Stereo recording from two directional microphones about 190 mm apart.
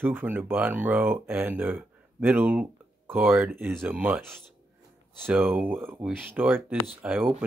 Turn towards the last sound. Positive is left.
turn(degrees=-10)  # may be behind; listen again after turning